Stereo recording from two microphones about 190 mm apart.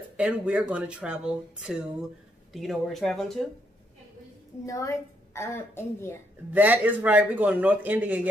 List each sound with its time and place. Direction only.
0.2 s speech: 5° right (ahead or behind)
4.6 s a woman's voice: 15° left (ahead or behind)
6.5 s a man's voice: 10° right (ahead or behind)